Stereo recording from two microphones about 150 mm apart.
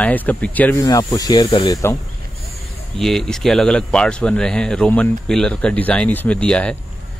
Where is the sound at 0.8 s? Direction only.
25° left (ahead or behind).